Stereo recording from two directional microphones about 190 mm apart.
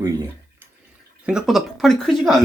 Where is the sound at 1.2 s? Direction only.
5° right (ahead or behind).